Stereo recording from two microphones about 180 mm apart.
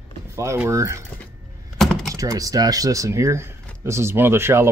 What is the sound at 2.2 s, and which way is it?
Speech, 20° right (ahead or behind).